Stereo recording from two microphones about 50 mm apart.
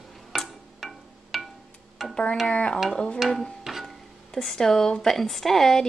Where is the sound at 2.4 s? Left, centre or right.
Left.